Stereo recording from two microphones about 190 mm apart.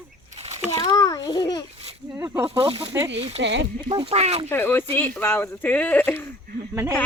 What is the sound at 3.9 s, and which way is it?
Speech, 30° right (ahead or behind).